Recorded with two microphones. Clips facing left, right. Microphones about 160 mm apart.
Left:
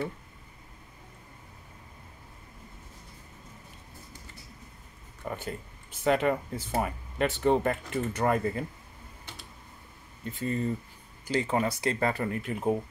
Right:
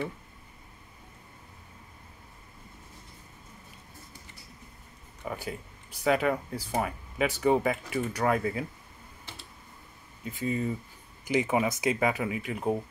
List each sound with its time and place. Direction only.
5.2 s speech: 5° right (ahead or behind)
10.2 s speech: 5° right (ahead or behind)
11.2 s speech: 20° right (ahead or behind); by 12.8 s centre (ahead or behind)